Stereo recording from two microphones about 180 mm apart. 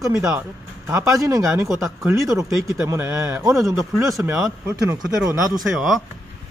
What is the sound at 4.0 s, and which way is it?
Speech, 15° right (ahead or behind).